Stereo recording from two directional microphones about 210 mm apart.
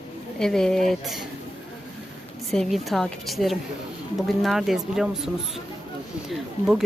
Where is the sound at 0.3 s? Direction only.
5° left (ahead or behind).